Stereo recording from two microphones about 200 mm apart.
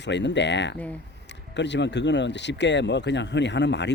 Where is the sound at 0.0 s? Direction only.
60° left (ahead or behind).